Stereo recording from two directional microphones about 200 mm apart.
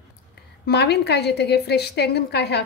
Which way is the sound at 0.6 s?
55° left (ahead or behind).